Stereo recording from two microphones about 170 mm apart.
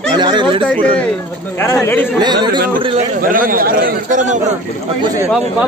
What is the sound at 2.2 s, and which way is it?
Speech, 25° right (ahead or behind).